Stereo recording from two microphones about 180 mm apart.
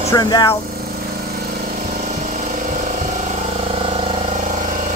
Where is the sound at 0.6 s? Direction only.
55° right (ahead or behind); by 4.3 s 35° right (ahead or behind).